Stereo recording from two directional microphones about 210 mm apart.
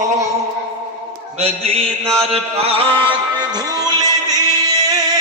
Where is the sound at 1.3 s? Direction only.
30° right (ahead or behind).